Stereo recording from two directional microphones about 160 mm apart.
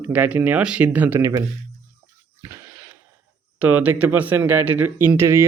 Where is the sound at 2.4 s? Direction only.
15° right (ahead or behind).